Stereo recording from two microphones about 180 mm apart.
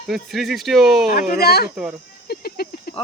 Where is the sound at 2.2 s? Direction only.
60° left (ahead or behind).